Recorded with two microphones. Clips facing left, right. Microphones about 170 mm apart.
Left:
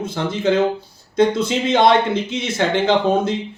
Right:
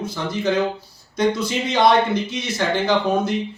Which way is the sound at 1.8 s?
25° left (ahead or behind).